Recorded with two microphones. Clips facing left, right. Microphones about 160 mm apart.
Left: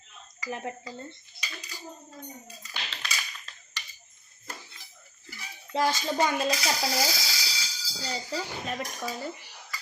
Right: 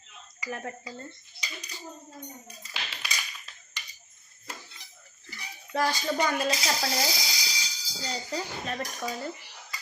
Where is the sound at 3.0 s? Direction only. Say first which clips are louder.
Left 1 dB; 10° right (ahead or behind).